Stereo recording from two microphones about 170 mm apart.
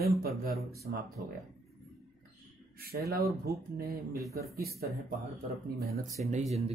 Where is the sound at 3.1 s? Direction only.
60° right (ahead or behind).